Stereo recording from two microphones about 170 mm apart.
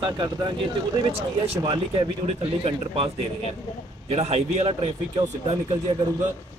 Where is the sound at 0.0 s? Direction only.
30° right (ahead or behind).